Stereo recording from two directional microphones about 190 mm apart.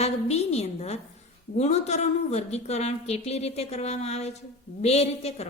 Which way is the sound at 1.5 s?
35° left (ahead or behind).